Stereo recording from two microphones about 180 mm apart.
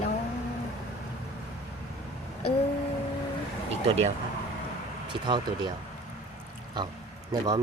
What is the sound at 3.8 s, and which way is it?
Speech, 35° right (ahead or behind).